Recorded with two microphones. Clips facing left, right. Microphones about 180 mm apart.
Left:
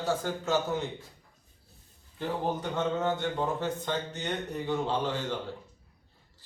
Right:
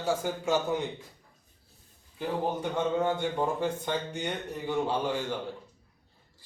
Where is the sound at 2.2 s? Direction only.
10° right (ahead or behind).